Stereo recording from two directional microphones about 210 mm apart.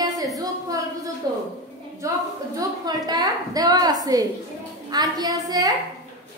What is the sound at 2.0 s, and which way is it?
A woman's voice, 15° right (ahead or behind).